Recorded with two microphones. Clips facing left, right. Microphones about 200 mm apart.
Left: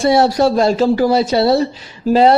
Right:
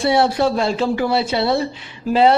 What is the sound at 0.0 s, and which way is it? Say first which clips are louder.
A man's voice: left 4 dB; 40° left (ahead or behind).